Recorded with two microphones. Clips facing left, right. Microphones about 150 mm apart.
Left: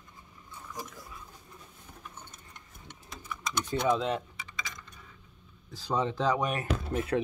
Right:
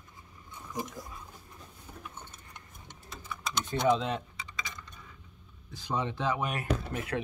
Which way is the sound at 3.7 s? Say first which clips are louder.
Right 1 dB; 25° right (ahead or behind).